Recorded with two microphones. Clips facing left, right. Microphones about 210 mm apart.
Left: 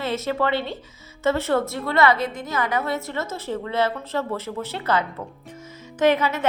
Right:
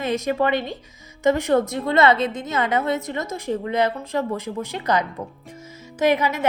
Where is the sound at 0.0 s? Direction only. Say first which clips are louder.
Right 2 dB; 15° right (ahead or behind).